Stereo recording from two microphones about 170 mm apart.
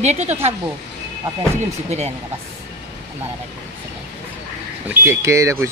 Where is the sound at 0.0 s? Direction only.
40° right (ahead or behind).